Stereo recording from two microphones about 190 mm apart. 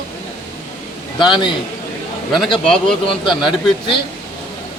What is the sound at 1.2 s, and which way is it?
Speech, 25° left (ahead or behind).